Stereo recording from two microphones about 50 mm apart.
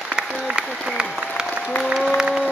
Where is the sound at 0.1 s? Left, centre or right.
Centre.